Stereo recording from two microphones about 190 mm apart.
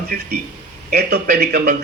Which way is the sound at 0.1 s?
55° right (ahead or behind).